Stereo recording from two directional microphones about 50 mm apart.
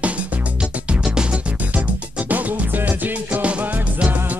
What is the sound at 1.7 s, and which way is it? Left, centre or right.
Music, right.